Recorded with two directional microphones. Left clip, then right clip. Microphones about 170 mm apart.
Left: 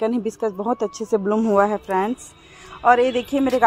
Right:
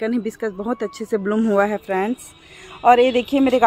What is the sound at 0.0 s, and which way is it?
Speech, centre (ahead or behind).